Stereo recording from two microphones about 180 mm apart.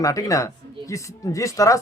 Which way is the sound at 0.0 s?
20° left (ahead or behind).